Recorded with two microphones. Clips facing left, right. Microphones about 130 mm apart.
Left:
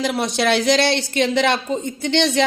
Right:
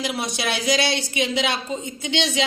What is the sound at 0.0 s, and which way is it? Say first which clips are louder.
A woman's voice: left 6 dB; 55° left (ahead or behind).